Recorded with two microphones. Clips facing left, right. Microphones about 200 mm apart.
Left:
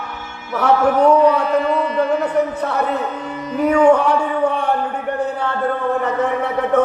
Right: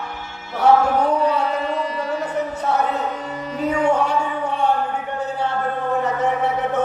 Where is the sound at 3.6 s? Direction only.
60° left (ahead or behind).